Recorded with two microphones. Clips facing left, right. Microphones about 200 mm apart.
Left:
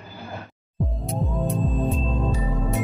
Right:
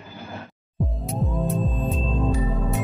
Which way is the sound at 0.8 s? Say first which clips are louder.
Even; centre (ahead or behind).